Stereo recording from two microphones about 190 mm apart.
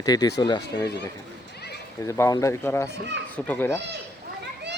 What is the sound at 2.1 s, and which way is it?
Speech, 15° left (ahead or behind).